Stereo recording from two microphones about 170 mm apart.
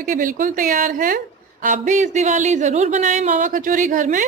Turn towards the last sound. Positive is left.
turn(degrees=-50)  # may be behind; listen again after turning